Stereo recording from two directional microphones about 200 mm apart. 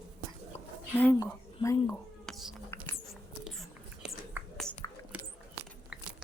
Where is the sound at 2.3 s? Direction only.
Centre (ahead or behind).